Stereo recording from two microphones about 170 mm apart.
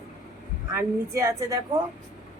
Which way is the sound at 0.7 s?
15° right (ahead or behind).